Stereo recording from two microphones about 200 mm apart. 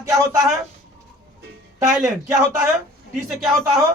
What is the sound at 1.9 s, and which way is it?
Speech, 5° right (ahead or behind).